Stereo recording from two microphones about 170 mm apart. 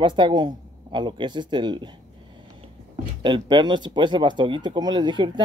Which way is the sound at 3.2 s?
25° right (ahead or behind).